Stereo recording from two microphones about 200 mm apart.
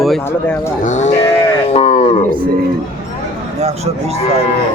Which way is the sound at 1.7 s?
30° left (ahead or behind).